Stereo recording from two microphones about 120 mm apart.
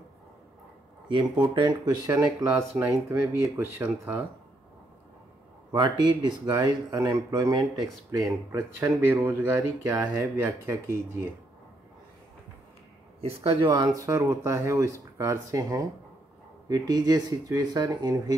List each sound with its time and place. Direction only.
1.1 s speech: 40° right (ahead or behind)
2.7 s speech: 25° right (ahead or behind)
5.7 s speech: 35° right (ahead or behind)
13.2 s speech: 55° right (ahead or behind); by 14.0 s 35° right (ahead or behind)
14.0 s speech: 25° right (ahead or behind)